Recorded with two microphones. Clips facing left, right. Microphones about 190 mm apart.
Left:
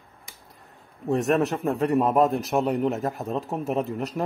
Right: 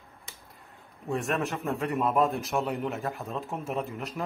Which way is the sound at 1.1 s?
40° left (ahead or behind).